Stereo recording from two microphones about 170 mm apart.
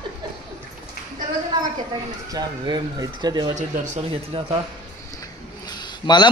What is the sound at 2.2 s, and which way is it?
Speech, 25° right (ahead or behind).